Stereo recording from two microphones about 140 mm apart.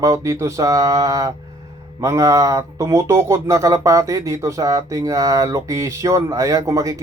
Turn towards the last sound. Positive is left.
turn(degrees=-25)  # may be behind; listen again after turning